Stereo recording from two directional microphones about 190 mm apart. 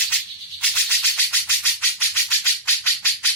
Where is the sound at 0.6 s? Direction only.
5° left (ahead or behind).